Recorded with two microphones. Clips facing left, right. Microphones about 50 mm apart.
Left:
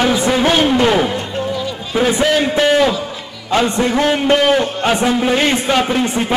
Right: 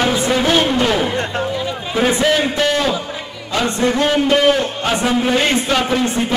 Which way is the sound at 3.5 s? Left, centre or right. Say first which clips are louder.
Left 2 dB; left.